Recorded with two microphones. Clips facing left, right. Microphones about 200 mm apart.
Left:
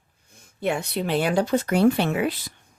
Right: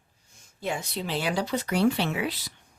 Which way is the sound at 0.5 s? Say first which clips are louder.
Left 6 dB; 60° left (ahead or behind).